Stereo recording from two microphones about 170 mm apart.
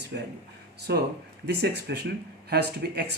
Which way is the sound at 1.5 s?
75° right (ahead or behind).